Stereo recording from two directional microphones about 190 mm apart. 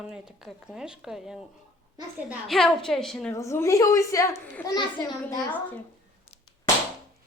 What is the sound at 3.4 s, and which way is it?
A child's voice, 15° left (ahead or behind).